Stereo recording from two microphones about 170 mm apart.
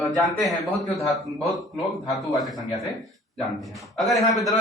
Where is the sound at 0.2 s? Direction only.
Centre (ahead or behind).